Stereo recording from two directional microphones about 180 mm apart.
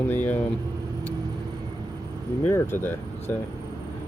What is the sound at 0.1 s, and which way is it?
Vehicle, 10° left (ahead or behind).